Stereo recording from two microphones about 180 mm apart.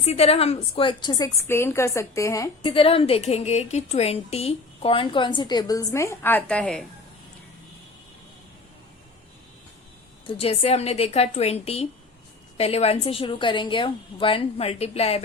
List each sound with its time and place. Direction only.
0.0 s a woman's voice: 35° left (ahead or behind); by 2.5 s 15° left (ahead or behind)
2.6 s a woman's voice: 30° left (ahead or behind); by 6.8 s 5° left (ahead or behind)
10.2 s a woman's voice: 30° left (ahead or behind)